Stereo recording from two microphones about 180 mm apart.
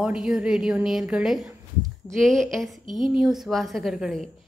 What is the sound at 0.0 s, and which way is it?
A woman's voice, 5° right (ahead or behind).